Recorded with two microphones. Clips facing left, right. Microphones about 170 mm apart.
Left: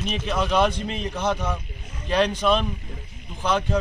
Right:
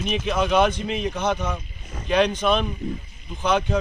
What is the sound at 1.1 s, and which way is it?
A man's voice, centre (ahead or behind).